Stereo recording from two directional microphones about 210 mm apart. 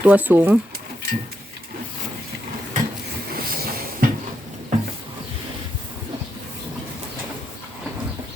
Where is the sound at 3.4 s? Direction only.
45° right (ahead or behind).